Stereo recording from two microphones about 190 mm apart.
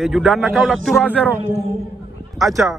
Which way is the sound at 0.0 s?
Centre (ahead or behind).